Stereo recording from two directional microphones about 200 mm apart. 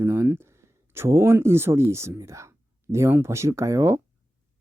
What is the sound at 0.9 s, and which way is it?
Speech, 15° right (ahead or behind).